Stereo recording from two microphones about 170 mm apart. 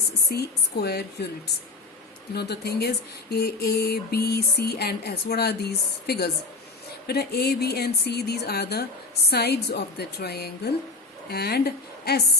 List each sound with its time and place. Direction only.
0.3 s speech: 70° left (ahead or behind)
2.3 s speech: 70° left (ahead or behind)